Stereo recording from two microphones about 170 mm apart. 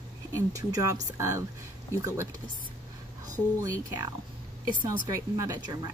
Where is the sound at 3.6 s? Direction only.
20° right (ahead or behind).